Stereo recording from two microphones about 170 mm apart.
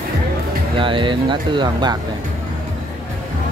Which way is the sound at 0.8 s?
30° right (ahead or behind).